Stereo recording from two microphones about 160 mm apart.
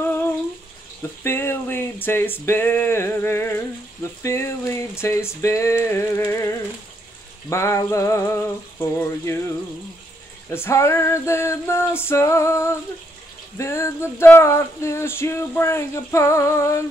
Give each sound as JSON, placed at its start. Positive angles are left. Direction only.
{"t": 0.0, "sound": "bathtub", "side_deg": 15}
{"t": 1.2, "sound": "male singing", "side_deg": 15}
{"t": 10.5, "sound": "male singing", "side_deg": 15}